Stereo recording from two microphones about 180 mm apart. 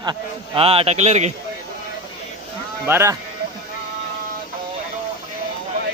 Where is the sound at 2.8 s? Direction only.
10° right (ahead or behind).